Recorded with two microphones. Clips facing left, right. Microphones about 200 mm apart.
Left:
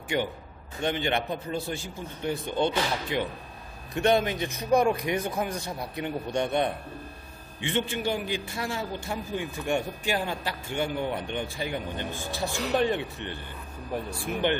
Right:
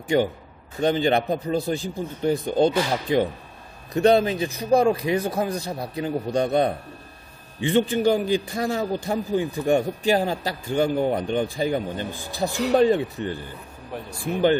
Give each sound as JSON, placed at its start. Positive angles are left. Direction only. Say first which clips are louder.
{"t": 0.8, "sound": "a man's voice", "louder": "right 7 dB", "side_deg": -35}
{"t": 7.7, "sound": "a man's voice", "louder": "right 9 dB", "side_deg": -40}